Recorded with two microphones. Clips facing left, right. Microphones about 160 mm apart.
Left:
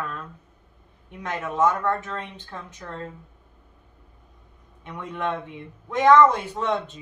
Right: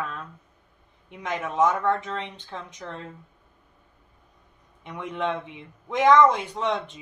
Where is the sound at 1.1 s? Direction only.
15° right (ahead or behind).